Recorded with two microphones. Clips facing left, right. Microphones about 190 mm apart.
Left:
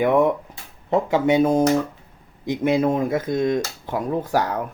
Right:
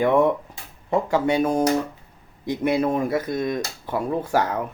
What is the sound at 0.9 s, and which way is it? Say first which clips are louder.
Mantra: left 2 dB; 20° left (ahead or behind).